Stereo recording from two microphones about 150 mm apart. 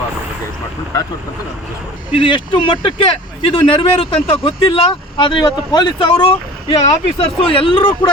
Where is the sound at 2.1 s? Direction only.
35° left (ahead or behind).